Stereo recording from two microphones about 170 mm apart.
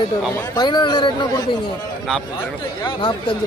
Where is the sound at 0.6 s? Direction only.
25° left (ahead or behind).